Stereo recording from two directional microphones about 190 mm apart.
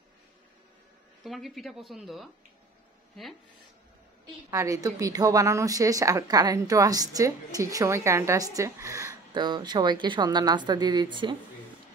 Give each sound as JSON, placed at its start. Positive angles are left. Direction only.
{"t": 1.2, "sound": "speech", "side_deg": 0}
{"t": 4.5, "sound": "speech", "side_deg": -15}